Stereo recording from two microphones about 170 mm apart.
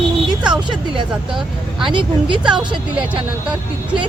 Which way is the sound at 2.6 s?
30° right (ahead or behind).